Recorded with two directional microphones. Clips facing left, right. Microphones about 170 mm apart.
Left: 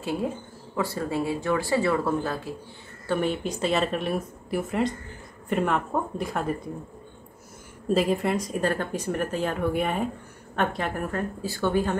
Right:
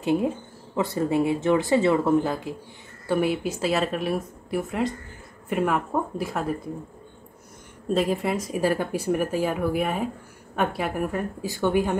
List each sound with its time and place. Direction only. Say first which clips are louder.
0.0 s speech: right 5 dB; 20° right (ahead or behind); by 6.5 s centre (ahead or behind)
7.9 s a woman's voice: even; centre (ahead or behind)